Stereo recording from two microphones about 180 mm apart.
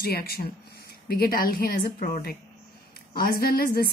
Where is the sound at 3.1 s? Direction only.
55° left (ahead or behind).